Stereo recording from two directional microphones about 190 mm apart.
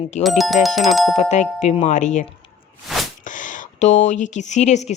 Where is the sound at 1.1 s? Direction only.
40° left (ahead or behind).